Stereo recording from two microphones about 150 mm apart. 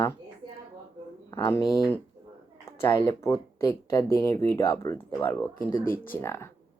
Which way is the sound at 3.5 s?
20° left (ahead or behind).